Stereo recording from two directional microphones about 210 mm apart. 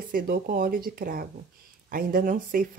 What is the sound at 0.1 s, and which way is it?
Speech, 45° right (ahead or behind).